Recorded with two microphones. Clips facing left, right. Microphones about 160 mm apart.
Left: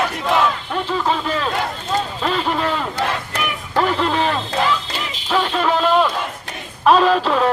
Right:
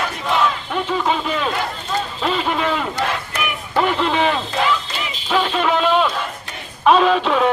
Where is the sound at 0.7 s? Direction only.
Centre (ahead or behind).